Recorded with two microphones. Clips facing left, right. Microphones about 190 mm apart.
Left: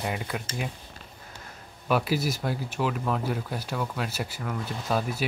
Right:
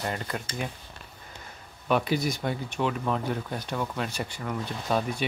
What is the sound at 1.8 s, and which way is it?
Speech, 5° left (ahead or behind).